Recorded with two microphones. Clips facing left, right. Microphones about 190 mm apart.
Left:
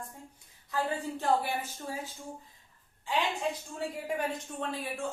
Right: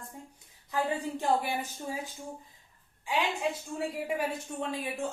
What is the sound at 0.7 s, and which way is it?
Speech, 15° right (ahead or behind).